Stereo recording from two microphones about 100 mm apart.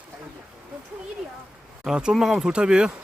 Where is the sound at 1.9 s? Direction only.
5° right (ahead or behind).